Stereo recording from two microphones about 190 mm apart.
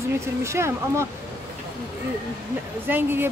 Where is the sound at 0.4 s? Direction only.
15° right (ahead or behind).